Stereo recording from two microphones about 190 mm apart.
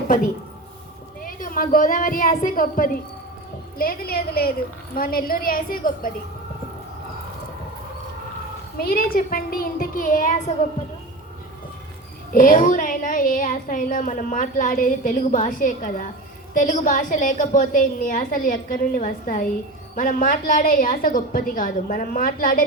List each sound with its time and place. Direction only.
1.2 s a woman's voice: 45° left (ahead or behind)
8.8 s a woman's voice: 50° left (ahead or behind)
12.3 s a woman's voice: 45° left (ahead or behind)